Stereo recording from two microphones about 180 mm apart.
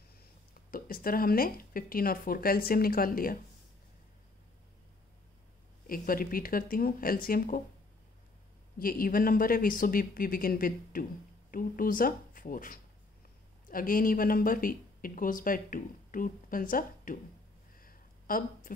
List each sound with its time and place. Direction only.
0.7 s speech: 55° left (ahead or behind)
5.9 s speech: 50° left (ahead or behind)
8.7 s speech: 50° left (ahead or behind)
17.7 s a sound: 50° left (ahead or behind)